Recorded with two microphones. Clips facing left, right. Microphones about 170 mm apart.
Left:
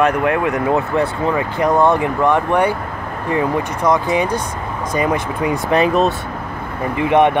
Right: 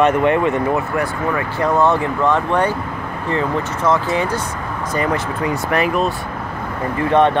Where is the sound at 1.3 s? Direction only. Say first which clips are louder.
Left 1 dB; 15° left (ahead or behind).